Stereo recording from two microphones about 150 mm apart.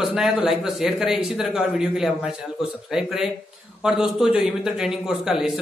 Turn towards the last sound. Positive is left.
turn(degrees=-5)  # may be behind; listen again after turning